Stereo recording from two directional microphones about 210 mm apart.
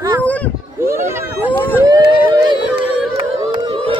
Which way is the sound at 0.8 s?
10° right (ahead or behind).